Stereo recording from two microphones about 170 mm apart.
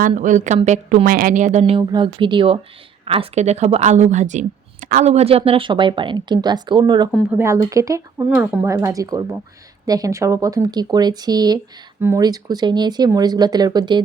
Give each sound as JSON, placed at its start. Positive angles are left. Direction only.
{"t": 0.2, "sound": "a woman's voice", "side_deg": -45}
{"t": 1.9, "sound": "speech", "side_deg": -30}
{"t": 7.3, "sound": "speech", "side_deg": -15}
{"t": 8.7, "sound": "speech", "side_deg": -20}